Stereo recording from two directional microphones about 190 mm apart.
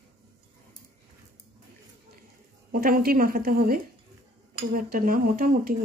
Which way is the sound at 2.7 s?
50° right (ahead or behind).